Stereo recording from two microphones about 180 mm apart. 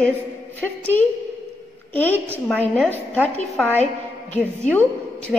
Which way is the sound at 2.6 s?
10° right (ahead or behind).